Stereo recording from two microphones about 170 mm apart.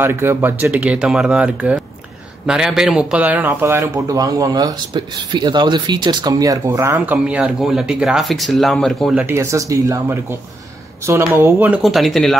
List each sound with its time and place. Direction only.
0.0 s speech: 15° right (ahead or behind)
9.2 s speech: 15° right (ahead or behind); by 12.4 s centre (ahead or behind)